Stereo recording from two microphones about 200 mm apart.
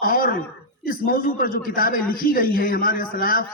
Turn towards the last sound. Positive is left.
turn(degrees=45)  # may be behind; listen again after turning